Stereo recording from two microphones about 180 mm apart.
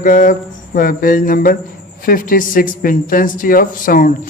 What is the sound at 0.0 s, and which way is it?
Speech, 50° left (ahead or behind).